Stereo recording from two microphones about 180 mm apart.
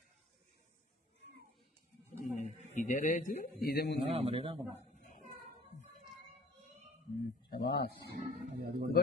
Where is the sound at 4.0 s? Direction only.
35° right (ahead or behind).